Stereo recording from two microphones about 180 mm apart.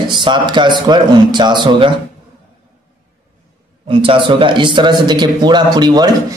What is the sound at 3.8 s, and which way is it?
Speech, 30° right (ahead or behind).